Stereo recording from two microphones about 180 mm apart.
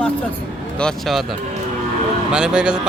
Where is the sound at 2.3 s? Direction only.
5° right (ahead or behind).